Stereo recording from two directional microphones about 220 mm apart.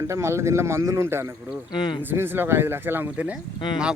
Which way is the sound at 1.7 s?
20° left (ahead or behind).